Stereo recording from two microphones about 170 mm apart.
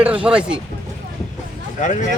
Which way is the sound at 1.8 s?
45° left (ahead or behind).